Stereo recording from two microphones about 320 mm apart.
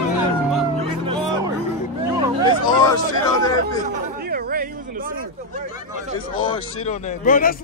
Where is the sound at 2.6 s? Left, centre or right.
Centre.